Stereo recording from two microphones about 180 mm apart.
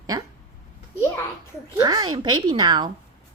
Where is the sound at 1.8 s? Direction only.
20° right (ahead or behind).